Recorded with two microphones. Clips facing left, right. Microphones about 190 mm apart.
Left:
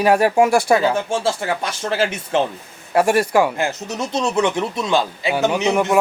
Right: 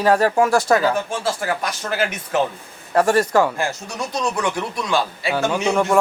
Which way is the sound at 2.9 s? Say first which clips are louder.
Left 1 dB; 10° left (ahead or behind).